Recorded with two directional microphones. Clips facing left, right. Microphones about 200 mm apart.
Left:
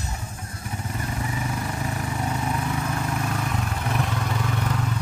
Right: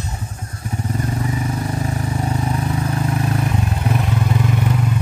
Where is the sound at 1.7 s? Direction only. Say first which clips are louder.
Right 6 dB; 35° right (ahead or behind); by 4.9 s 15° right (ahead or behind).